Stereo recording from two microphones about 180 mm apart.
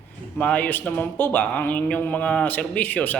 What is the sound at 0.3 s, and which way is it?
Speech, 5° left (ahead or behind).